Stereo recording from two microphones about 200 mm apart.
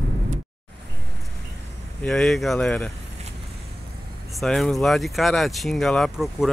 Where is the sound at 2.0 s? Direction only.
Centre (ahead or behind).